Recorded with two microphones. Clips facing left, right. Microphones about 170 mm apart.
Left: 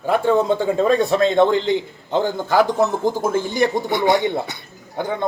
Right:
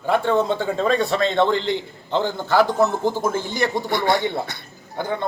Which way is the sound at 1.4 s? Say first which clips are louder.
Left 4 dB; 50° left (ahead or behind).